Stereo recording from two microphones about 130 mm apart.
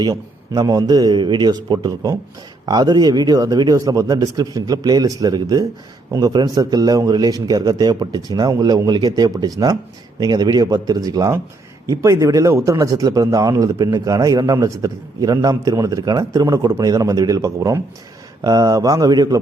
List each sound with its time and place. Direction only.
0.0 s a man's voice: 30° right (ahead or behind)